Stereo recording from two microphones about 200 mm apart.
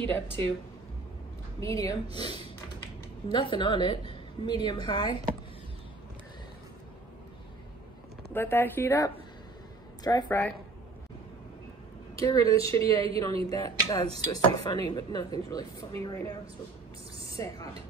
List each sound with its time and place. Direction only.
1.6 s a woman's voice: 15° left (ahead or behind)
8.3 s speech: 10° left (ahead or behind)
12.2 s speech: 15° left (ahead or behind)
17.4 s speech: 15° left (ahead or behind)